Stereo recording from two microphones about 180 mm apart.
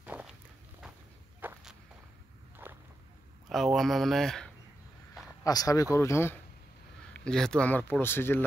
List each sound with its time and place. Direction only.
0.0 s walk: 10° right (ahead or behind)
1.4 s walk: 5° right (ahead or behind)
3.4 s speech: centre (ahead or behind)
5.4 s speech: 20° left (ahead or behind)
7.2 s speech: 5° left (ahead or behind)